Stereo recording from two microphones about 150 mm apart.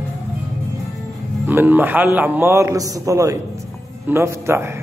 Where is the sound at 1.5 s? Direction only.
15° right (ahead or behind).